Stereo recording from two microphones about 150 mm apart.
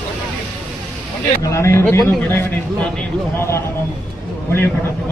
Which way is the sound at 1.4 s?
20° left (ahead or behind).